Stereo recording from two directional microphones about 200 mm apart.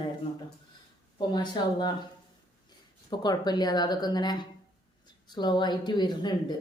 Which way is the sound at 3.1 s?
20° left (ahead or behind).